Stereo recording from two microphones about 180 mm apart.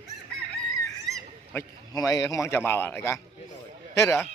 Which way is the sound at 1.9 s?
20° left (ahead or behind).